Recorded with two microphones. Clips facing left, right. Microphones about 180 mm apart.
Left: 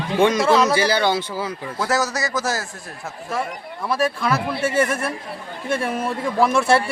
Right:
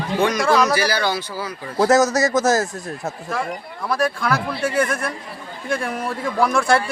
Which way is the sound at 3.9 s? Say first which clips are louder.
Even; 5° left (ahead or behind).